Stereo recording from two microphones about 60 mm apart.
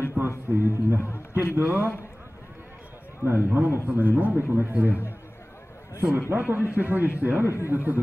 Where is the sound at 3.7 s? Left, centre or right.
Right.